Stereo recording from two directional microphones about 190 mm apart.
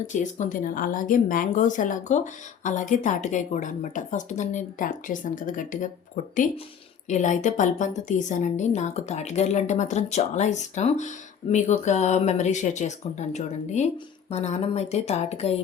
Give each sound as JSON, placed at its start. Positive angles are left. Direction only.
{"t": 0.1, "sound": "a woman's voice", "side_deg": 40}
{"t": 7.1, "sound": "a woman's voice", "side_deg": 40}